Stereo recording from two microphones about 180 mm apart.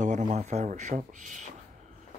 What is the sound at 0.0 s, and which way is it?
Speech, 40° right (ahead or behind).